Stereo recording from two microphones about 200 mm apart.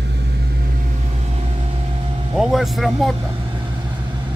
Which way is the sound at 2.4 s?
Centre (ahead or behind).